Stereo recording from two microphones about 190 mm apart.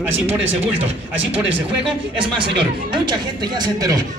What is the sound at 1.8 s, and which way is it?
Speech, 25° right (ahead or behind).